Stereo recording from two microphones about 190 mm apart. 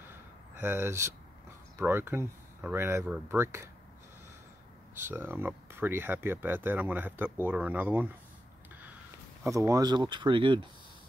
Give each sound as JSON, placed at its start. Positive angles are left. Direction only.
{"t": 0.1, "sound": "a sound", "side_deg": -10}
{"t": 1.8, "sound": "speech", "side_deg": -10}
{"t": 4.9, "sound": "speech", "side_deg": -10}
{"t": 9.4, "sound": "speech", "side_deg": -15}